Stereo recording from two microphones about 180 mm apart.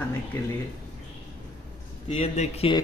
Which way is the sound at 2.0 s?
35° left (ahead or behind).